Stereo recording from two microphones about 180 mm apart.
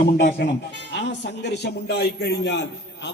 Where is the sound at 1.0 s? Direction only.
75° left (ahead or behind).